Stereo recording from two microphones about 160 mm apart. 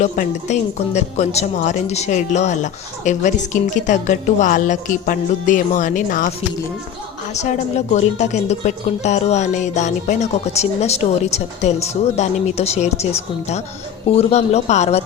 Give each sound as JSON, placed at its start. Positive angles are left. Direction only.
{"t": 0.0, "sound": "speech", "side_deg": 50}
{"t": 7.4, "sound": "speech", "side_deg": 45}